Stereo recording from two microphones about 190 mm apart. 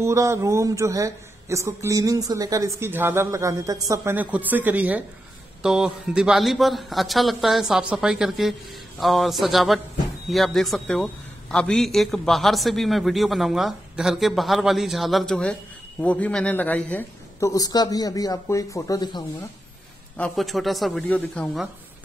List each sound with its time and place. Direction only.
0.0 s a man's voice: 15° right (ahead or behind); by 19.2 s 20° left (ahead or behind)
20.2 s a man's voice: 5° left (ahead or behind)